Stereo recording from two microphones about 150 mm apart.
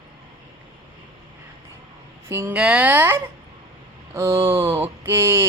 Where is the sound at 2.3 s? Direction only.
15° right (ahead or behind).